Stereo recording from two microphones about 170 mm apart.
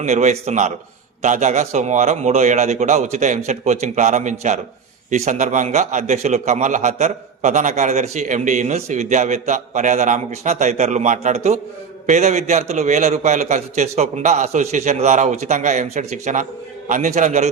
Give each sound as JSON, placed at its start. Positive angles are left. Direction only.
{"t": 0.0, "sound": "a man's voice", "side_deg": -45}